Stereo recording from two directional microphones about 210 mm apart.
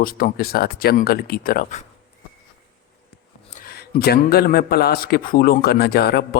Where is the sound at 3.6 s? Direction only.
45° left (ahead or behind).